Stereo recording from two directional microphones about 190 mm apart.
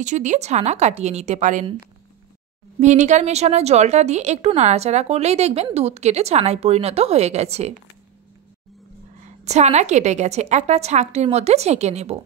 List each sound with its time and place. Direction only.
0.0 s a woman's voice: 40° right (ahead or behind)
2.8 s a woman's voice: 40° right (ahead or behind)
9.4 s a woman's voice: 35° right (ahead or behind)